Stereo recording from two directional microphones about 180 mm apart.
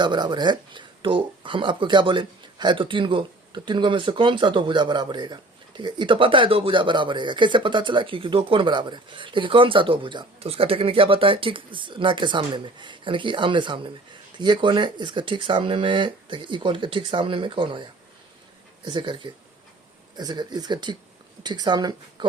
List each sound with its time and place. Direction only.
0.0 s speech: 25° right (ahead or behind)
18.9 s speech: 25° right (ahead or behind)